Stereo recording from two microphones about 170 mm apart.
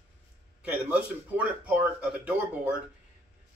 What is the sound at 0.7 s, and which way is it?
A man's voice, 10° right (ahead or behind).